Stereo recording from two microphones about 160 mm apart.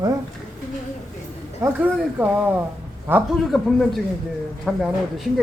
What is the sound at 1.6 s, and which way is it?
Speech, 10° right (ahead or behind).